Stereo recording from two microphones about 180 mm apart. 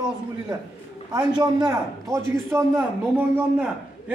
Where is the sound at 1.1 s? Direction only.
25° right (ahead or behind).